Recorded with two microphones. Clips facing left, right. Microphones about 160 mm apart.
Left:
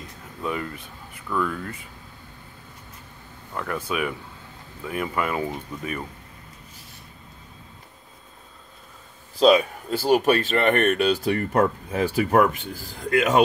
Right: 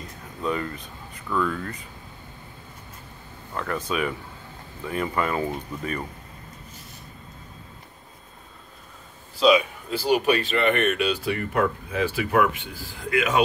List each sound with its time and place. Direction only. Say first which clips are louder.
0.4 s speech: right 2 dB; 10° left (ahead or behind)
3.5 s speech: even; 10° left (ahead or behind)
9.4 s speech: left 2 dB; 45° left (ahead or behind)